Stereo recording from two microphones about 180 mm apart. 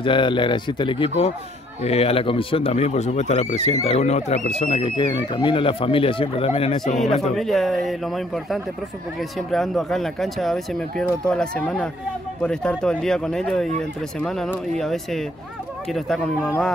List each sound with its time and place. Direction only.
0.0 s speech: 25° left (ahead or behind)
7.3 s speech: centre (ahead or behind)
16.4 s speech: 10° left (ahead or behind)